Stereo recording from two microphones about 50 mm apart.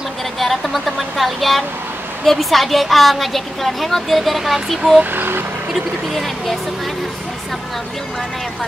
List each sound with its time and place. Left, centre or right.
0.4 s vehicle: centre
2.2 s a woman's voice: centre
5.1 s speech: right
5.7 s a woman's voice: centre